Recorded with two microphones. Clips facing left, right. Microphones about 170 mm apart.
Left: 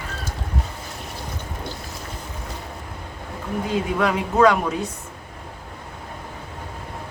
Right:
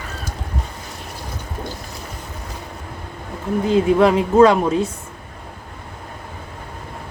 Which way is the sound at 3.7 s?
30° right (ahead or behind).